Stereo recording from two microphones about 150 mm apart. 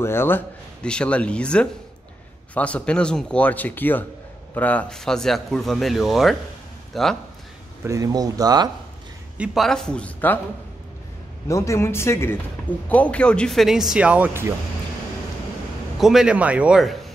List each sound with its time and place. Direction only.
0.0 s a man's voice: 15° left (ahead or behind)
7.8 s speech: 20° right (ahead or behind)
9.4 s speech: centre (ahead or behind)
11.4 s speech: 20° left (ahead or behind); by 14.5 s 15° right (ahead or behind)
16.0 s speech: centre (ahead or behind)